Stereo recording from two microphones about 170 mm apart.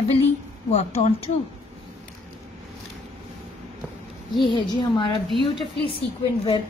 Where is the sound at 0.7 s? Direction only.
40° left (ahead or behind).